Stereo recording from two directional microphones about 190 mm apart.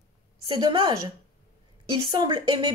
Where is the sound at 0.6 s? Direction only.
20° right (ahead or behind).